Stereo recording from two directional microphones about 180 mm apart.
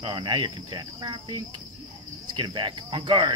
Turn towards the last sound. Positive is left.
turn(degrees=-25)  # may be behind; listen again after turning